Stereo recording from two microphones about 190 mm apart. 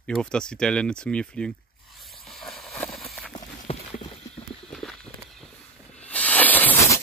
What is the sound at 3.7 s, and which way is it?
Clip-clop, 30° left (ahead or behind).